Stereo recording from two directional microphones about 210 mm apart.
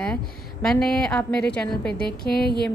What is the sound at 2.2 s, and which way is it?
Music, 45° left (ahead or behind).